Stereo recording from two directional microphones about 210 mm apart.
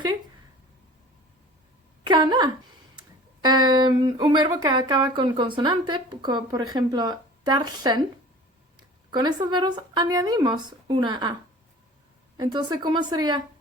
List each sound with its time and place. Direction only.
2.0 s speech: 20° right (ahead or behind)
9.0 s speech: 20° right (ahead or behind)
12.4 s speech: 20° right (ahead or behind)